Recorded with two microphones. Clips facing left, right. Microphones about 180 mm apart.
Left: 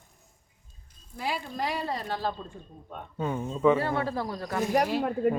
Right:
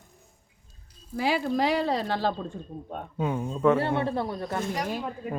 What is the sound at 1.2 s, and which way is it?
A woman's voice, 90° right.